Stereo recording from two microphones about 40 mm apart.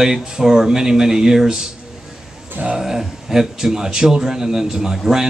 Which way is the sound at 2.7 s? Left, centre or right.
Centre.